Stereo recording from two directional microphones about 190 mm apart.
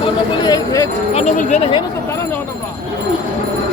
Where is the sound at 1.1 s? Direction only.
35° left (ahead or behind).